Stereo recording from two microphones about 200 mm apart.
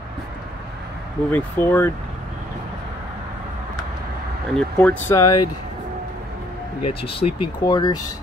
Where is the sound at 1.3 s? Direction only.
10° left (ahead or behind).